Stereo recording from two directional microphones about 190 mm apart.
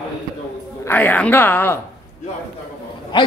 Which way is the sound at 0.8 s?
10° left (ahead or behind).